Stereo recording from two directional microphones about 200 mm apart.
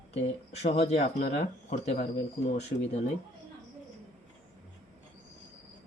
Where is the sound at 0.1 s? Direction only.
30° left (ahead or behind).